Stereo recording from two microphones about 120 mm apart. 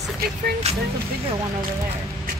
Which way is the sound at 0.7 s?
60° right (ahead or behind).